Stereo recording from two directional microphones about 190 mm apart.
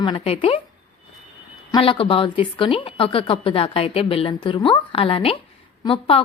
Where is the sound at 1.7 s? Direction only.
30° left (ahead or behind).